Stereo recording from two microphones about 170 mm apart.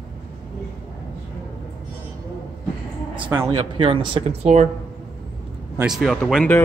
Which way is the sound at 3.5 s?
30° right (ahead or behind).